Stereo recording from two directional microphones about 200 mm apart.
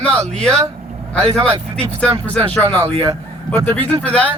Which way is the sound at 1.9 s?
5° left (ahead or behind).